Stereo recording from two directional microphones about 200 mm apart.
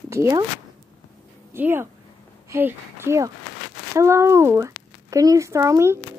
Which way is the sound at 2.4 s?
10° right (ahead or behind).